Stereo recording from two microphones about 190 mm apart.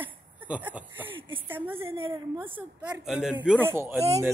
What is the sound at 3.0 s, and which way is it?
Speech, 5° right (ahead or behind).